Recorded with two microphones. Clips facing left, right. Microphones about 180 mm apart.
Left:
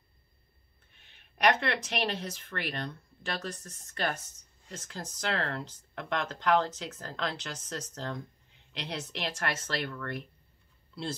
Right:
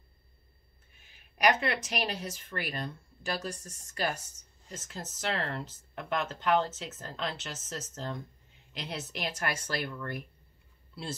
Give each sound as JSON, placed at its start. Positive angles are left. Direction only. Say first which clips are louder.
{"t": 0.9, "sound": "speech", "louder": "even", "side_deg": -5}
{"t": 3.5, "sound": "speech", "louder": "even", "side_deg": -30}
{"t": 3.9, "sound": "speech", "louder": "even", "side_deg": -10}